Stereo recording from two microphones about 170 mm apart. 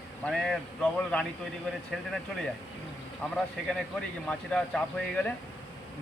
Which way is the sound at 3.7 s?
5° left (ahead or behind).